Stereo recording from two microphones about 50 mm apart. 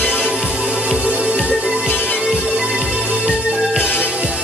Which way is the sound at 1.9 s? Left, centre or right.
Left.